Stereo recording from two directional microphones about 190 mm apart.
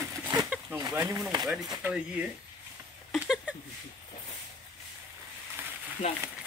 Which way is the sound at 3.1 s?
5° right (ahead or behind).